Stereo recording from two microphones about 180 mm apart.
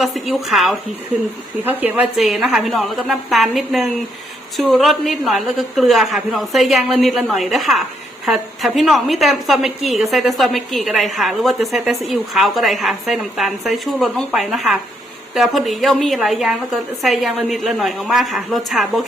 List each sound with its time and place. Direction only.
0.0 s a woman's voice: centre (ahead or behind)